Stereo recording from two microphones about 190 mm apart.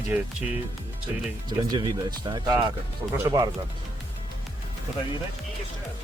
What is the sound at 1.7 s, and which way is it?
Speech, 20° right (ahead or behind).